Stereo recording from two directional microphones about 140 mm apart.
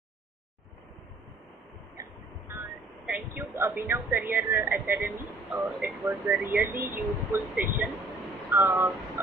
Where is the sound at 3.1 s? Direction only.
15° right (ahead or behind).